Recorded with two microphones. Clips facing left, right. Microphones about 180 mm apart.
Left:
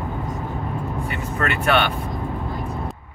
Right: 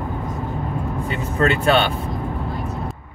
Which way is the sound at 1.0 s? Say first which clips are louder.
Right 7 dB; 25° right (ahead or behind).